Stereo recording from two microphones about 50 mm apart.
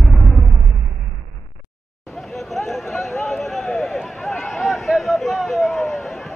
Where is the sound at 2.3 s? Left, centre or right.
Centre.